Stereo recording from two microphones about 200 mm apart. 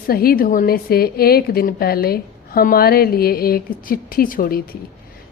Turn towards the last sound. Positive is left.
turn(degrees=50)  # may be behind; listen again after turning